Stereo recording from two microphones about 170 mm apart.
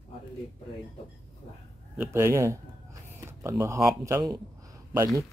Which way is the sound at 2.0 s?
15° right (ahead or behind).